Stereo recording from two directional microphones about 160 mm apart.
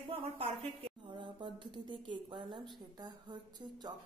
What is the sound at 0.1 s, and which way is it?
A woman's voice, 35° right (ahead or behind).